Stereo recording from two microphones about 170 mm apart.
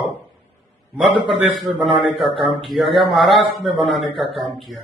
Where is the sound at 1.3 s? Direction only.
Centre (ahead or behind).